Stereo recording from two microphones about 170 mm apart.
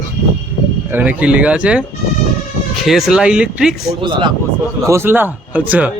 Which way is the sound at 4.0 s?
30° right (ahead or behind).